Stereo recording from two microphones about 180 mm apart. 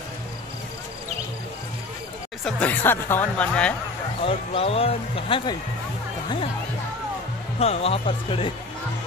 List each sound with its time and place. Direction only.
2.4 s speech: 10° left (ahead or behind)
4.3 s speech: 35° left (ahead or behind)
7.5 s speech: 35° left (ahead or behind)